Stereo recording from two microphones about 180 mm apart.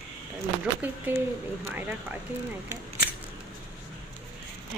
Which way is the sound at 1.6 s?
10° right (ahead or behind).